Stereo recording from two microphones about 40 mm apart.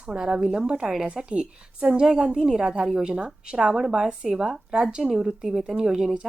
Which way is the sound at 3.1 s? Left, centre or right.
Right.